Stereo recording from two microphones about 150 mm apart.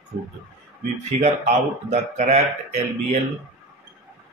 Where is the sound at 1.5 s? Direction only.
50° right (ahead or behind).